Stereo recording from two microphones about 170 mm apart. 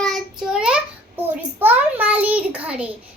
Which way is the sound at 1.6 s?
10° right (ahead or behind).